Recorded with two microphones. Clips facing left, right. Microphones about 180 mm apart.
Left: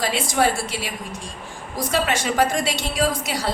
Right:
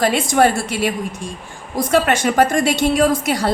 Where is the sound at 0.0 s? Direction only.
55° right (ahead or behind).